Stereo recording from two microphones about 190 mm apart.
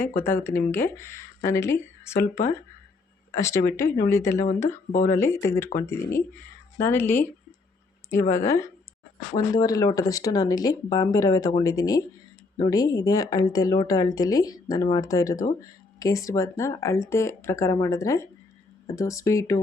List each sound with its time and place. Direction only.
0.2 s speech: 10° left (ahead or behind)
8.3 s a woman's voice: 15° left (ahead or behind)